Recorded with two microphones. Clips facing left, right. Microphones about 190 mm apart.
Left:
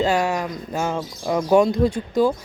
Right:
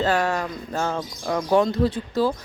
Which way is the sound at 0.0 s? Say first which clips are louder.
Left 2 dB; 10° left (ahead or behind).